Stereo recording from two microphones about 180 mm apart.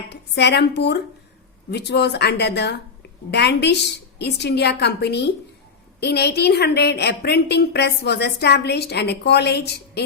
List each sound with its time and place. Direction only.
0.1 s a woman's voice: 70° left (ahead or behind)